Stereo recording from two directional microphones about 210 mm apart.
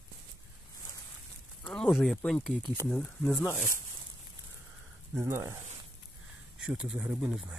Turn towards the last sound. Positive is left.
turn(degrees=-5)  # may be behind; listen again after turning